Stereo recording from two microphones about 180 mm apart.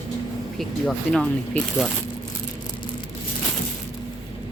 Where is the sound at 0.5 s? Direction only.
Centre (ahead or behind).